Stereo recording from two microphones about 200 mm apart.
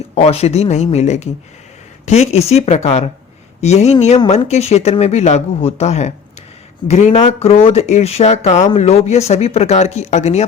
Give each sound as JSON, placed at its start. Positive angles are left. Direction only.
{"t": 0.1, "sound": "speech", "side_deg": 30}